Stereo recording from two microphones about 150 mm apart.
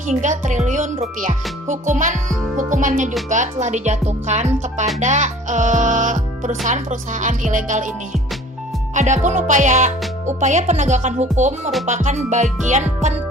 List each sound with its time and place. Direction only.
0.1 s speech: 55° right (ahead or behind)